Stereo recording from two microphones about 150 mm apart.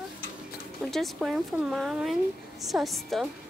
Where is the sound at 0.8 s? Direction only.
Centre (ahead or behind).